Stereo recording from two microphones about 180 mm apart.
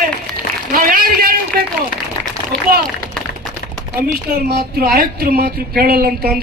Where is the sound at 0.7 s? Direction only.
55° right (ahead or behind).